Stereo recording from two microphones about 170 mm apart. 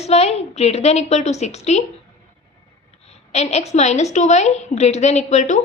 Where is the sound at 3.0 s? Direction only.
40° left (ahead or behind).